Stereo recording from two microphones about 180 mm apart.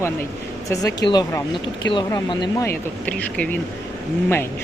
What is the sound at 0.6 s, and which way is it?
Speech, 20° left (ahead or behind).